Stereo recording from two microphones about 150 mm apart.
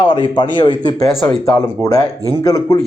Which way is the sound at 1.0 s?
Centre (ahead or behind).